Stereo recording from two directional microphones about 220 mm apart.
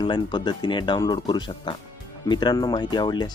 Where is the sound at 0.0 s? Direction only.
20° left (ahead or behind).